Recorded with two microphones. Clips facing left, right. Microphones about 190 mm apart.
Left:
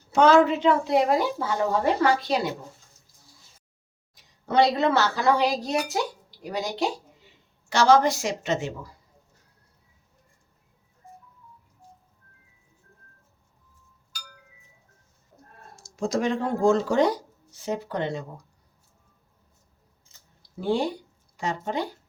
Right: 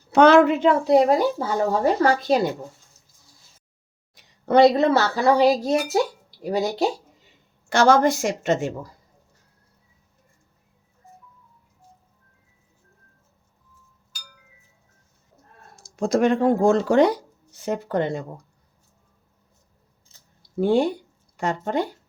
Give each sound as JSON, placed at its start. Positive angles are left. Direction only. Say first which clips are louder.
{"t": 0.1, "sound": "a woman's voice", "louder": "right 4 dB", "side_deg": -65}
{"t": 0.6, "sound": "speech", "louder": "right 4 dB", "side_deg": -35}
{"t": 4.1, "sound": "a sound", "louder": "right 6 dB", "side_deg": -65}
{"t": 4.8, "sound": "speech", "louder": "right 4 dB", "side_deg": -40}
{"t": 7.7, "sound": "a woman's voice", "louder": "right 2 dB", "side_deg": -55}
{"t": 15.7, "sound": "speech", "louder": "right 5 dB", "side_deg": -60}
{"t": 17.7, "sound": "a woman's voice", "louder": "right 4 dB", "side_deg": -50}
{"t": 20.6, "sound": "a woman's voice", "louder": "right 6 dB", "side_deg": -55}